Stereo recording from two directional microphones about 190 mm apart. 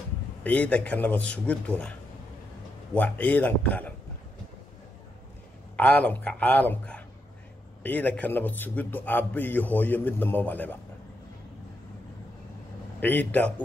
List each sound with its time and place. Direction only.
0.4 s a man's voice: 10° left (ahead or behind)
5.8 s a man's voice: 5° left (ahead or behind)
13.0 s a man's voice: 10° left (ahead or behind)